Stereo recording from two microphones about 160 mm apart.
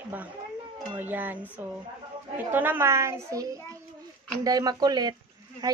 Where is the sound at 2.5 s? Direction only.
10° right (ahead or behind).